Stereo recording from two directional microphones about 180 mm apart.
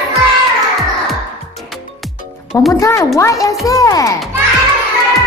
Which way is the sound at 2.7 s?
15° left (ahead or behind).